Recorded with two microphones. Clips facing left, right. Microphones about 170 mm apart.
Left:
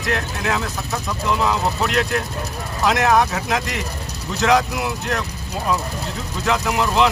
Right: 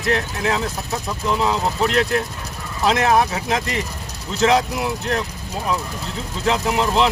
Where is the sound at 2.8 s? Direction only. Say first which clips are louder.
Even; 30° right (ahead or behind).